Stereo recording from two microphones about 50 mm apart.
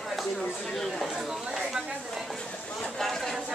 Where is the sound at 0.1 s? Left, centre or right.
Centre.